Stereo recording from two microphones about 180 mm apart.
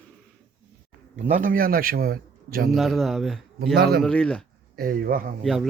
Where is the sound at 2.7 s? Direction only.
Centre (ahead or behind).